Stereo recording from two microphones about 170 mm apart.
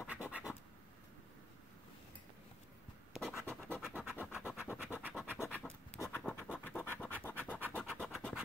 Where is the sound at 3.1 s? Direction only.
Centre (ahead or behind).